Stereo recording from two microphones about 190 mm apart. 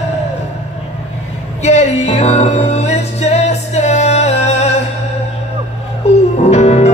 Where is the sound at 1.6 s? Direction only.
35° left (ahead or behind).